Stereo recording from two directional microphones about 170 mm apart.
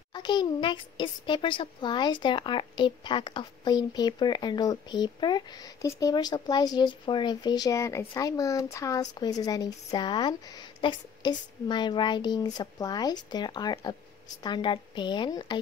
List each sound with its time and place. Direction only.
0.1 s a child's voice: 25° left (ahead or behind)